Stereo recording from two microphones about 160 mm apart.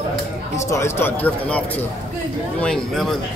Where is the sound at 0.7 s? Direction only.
15° left (ahead or behind).